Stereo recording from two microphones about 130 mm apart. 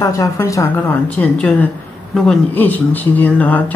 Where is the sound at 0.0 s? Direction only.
25° left (ahead or behind).